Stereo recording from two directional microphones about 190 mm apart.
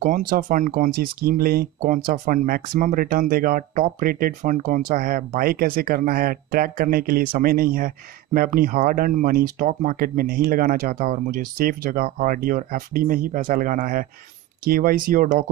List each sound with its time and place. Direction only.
0.0 s speech: 45° right (ahead or behind)